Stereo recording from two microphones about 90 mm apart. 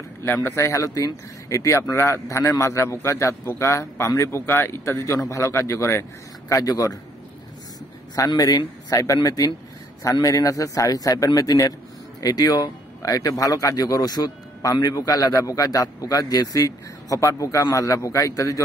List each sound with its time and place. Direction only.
0.2 s a man's voice: 25° left (ahead or behind)
8.2 s a man's voice: 45° left (ahead or behind)